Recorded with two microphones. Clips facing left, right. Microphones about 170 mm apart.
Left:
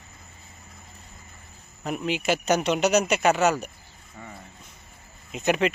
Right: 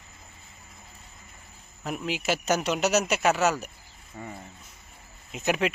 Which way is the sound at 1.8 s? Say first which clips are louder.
Left 3 dB; centre (ahead or behind).